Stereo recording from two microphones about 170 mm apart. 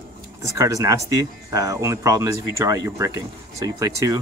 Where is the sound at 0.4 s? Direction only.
20° right (ahead or behind).